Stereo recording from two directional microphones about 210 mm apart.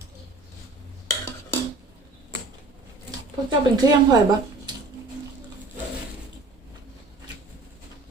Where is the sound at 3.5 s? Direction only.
20° right (ahead or behind).